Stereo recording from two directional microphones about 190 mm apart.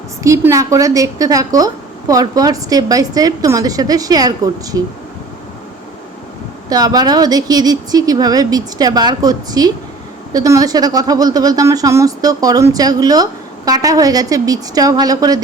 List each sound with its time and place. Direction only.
0.2 s a woman's voice: 15° right (ahead or behind)
6.7 s a woman's voice: 20° right (ahead or behind)